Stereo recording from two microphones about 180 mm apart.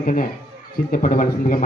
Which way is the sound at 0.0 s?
45° left (ahead or behind).